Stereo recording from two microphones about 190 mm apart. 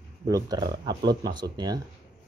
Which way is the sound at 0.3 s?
20° right (ahead or behind).